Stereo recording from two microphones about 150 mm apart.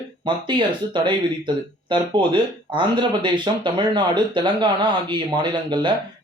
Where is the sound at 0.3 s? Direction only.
30° right (ahead or behind).